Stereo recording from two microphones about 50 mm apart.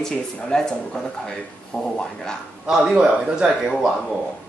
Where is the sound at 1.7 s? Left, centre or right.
Centre.